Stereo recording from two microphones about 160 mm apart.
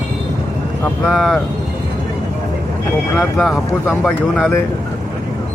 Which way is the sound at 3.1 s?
Centre (ahead or behind).